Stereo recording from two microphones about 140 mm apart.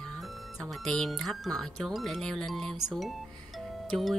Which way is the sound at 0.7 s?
Centre (ahead or behind).